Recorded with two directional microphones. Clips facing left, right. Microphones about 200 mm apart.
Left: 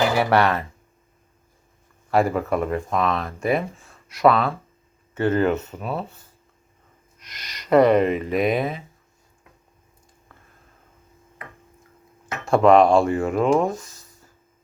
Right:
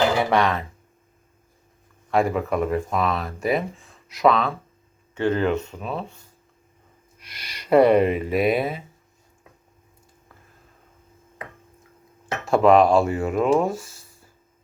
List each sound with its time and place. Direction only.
0.2 s speech: 5° left (ahead or behind)
2.0 s speech: centre (ahead or behind)
7.2 s speech: 10° right (ahead or behind)
12.5 s speech: centre (ahead or behind)